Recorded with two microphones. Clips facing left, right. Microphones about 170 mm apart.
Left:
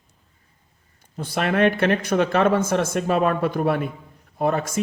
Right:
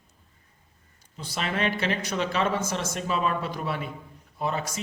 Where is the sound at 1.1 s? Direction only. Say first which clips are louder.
Left 8 dB; 55° left (ahead or behind).